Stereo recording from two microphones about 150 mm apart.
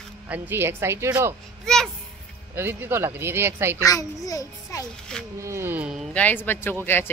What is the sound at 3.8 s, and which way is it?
A child's voice, 25° left (ahead or behind).